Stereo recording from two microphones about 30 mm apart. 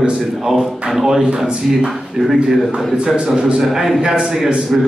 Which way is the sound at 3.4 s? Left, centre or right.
Right.